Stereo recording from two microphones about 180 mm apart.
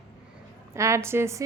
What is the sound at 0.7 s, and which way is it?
Speech, 15° right (ahead or behind).